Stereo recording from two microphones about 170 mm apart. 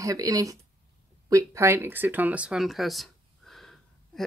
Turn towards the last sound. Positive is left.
turn(degrees=0)  # may be behind; listen again after turning